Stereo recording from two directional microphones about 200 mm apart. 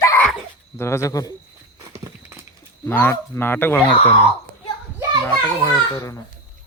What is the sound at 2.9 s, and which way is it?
Speech, 10° left (ahead or behind).